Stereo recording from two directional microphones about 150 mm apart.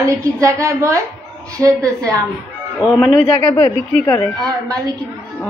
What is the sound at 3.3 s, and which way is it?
Speech, 20° left (ahead or behind).